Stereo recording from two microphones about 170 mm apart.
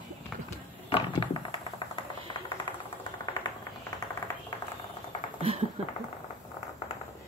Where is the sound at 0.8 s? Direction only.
30° left (ahead or behind).